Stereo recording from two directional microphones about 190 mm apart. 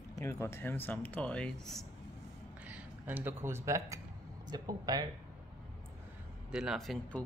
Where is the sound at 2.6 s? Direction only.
10° right (ahead or behind).